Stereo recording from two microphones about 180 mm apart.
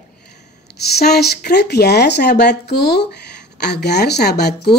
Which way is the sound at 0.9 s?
60° left (ahead or behind).